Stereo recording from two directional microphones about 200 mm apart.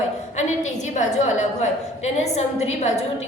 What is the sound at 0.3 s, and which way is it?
A woman's voice, 35° left (ahead or behind).